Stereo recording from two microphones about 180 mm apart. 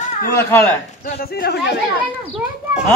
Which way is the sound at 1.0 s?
60° left (ahead or behind).